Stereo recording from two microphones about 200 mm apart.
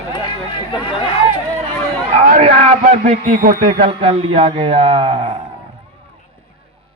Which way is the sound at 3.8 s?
30° right (ahead or behind).